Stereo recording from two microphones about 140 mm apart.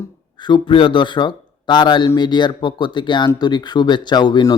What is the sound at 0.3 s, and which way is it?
Speech, 35° left (ahead or behind).